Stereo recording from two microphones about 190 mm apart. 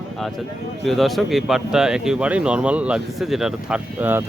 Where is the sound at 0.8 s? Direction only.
Centre (ahead or behind).